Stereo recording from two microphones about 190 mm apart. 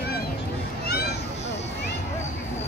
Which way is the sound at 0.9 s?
55° left (ahead or behind).